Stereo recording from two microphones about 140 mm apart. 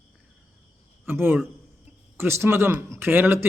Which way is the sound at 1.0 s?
15° right (ahead or behind).